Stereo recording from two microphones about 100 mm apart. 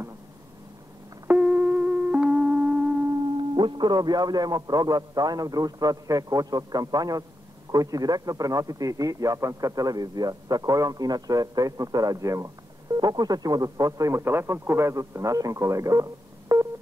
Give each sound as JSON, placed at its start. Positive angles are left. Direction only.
{"t": 1.4, "sound": "music", "side_deg": -10}
{"t": 3.3, "sound": "a man's voice", "side_deg": -55}